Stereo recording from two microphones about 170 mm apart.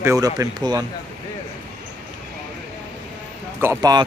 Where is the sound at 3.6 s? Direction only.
20° right (ahead or behind).